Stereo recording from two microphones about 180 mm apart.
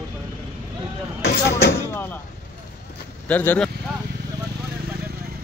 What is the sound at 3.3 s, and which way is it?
Speech, 10° left (ahead or behind).